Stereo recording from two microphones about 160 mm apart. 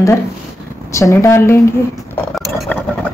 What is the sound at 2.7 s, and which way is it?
Vehicle, 10° left (ahead or behind).